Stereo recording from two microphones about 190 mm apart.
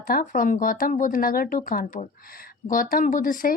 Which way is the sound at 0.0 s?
50° left (ahead or behind).